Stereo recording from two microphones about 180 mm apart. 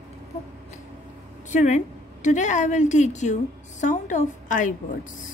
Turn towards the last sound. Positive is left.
turn(degrees=45)  # may be behind; listen again after turning